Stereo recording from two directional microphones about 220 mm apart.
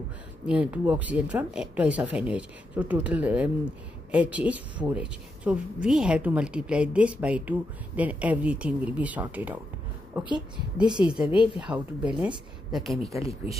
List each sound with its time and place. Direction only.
0.5 s a woman's voice: 5° right (ahead or behind)
10.2 s a woman's voice: 20° left (ahead or behind)
11.0 s a woman's voice: 5° right (ahead or behind)
11.2 s a woman's voice: 20° left (ahead or behind)
11.6 s a woman's voice: 5° right (ahead or behind)